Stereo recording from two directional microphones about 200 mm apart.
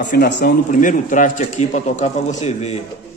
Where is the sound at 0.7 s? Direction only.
40° left (ahead or behind).